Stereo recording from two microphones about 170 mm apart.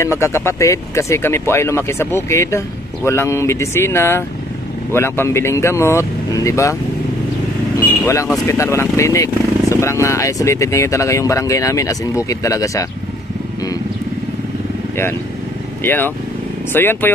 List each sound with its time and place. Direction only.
0.0 s speech: 15° left (ahead or behind)
8.0 s speech: 20° left (ahead or behind)
15.8 s speech: 10° left (ahead or behind)